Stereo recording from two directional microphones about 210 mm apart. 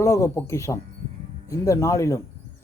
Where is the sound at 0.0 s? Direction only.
15° left (ahead or behind).